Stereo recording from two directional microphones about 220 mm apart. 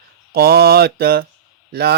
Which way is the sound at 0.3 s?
45° right (ahead or behind).